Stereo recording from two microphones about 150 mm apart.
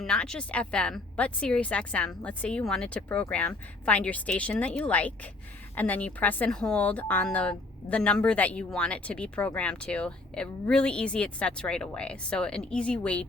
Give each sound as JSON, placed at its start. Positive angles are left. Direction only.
{"t": 0.0, "sound": "a woman's voice", "side_deg": 5}